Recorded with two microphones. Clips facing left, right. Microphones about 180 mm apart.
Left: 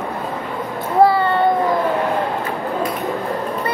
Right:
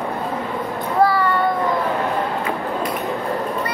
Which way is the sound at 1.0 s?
25° left (ahead or behind).